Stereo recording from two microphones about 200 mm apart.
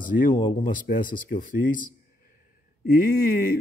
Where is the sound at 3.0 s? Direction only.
45° left (ahead or behind).